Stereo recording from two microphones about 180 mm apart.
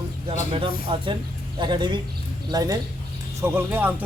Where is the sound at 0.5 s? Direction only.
30° right (ahead or behind).